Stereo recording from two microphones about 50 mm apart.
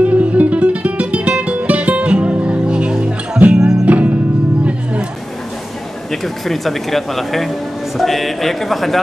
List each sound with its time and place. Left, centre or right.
0.0 s music: right
3.5 s music: centre
3.8 s music: right
6.2 s speech: centre